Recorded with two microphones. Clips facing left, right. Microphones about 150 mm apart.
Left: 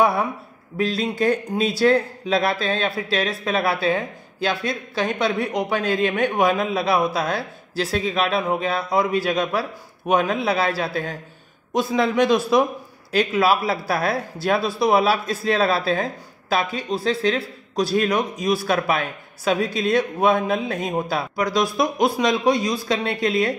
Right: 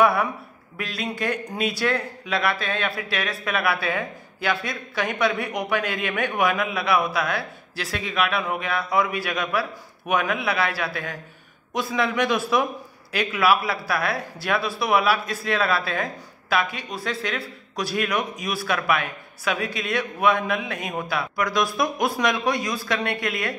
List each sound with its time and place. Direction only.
0.0 s a man's voice: 25° left (ahead or behind)